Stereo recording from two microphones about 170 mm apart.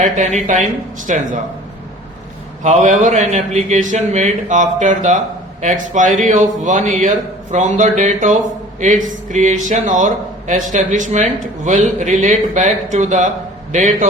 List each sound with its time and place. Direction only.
0.0 s a man's voice: 45° right (ahead or behind)
2.6 s a man's voice: 45° right (ahead or behind)